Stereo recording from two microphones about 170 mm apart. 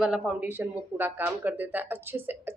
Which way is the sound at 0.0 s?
5° right (ahead or behind).